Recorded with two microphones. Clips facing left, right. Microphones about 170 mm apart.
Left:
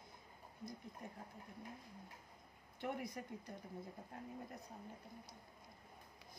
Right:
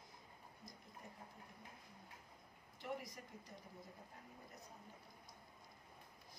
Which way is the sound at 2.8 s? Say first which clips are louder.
Left 4 dB; 60° left (ahead or behind).